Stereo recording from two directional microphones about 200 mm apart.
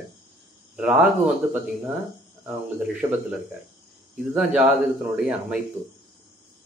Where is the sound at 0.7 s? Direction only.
5° right (ahead or behind).